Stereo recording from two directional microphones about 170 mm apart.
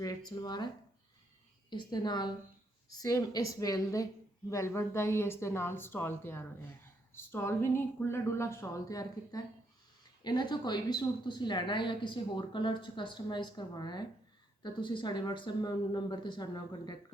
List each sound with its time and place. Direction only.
0.0 s speech: 20° left (ahead or behind)
1.7 s speech: 25° left (ahead or behind)